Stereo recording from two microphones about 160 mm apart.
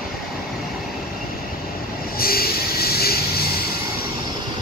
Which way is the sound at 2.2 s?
70° left (ahead or behind).